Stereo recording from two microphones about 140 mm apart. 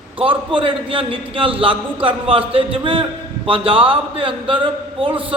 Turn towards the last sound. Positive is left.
turn(degrees=-40)  # may be behind; listen again after turning